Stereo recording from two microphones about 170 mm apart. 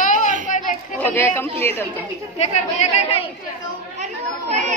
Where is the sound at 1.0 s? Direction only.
10° left (ahead or behind).